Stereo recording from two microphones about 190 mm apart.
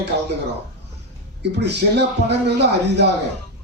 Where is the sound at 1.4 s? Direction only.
60° right (ahead or behind).